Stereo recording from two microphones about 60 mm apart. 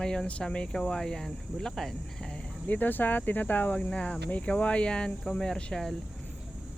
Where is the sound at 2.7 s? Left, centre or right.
Left.